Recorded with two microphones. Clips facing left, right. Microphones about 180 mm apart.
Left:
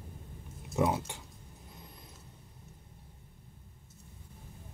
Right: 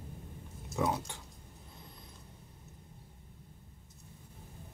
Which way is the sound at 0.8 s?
20° left (ahead or behind).